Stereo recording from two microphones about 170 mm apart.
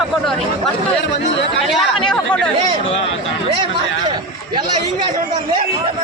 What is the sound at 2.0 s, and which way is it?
Chatter, 5° left (ahead or behind).